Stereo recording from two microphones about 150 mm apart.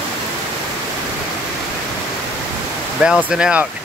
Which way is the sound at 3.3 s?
5° right (ahead or behind).